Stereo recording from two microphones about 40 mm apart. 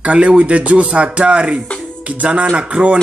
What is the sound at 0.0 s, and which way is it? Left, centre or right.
Speech, right.